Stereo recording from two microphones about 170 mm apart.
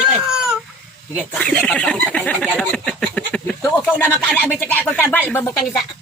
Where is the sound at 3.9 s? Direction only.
10° left (ahead or behind).